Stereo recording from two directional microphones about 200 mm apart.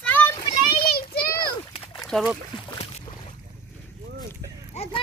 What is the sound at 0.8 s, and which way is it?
Children playing, 50° left (ahead or behind).